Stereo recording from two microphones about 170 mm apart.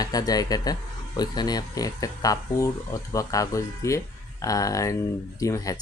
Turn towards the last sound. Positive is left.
turn(degrees=20)  # may be behind; listen again after turning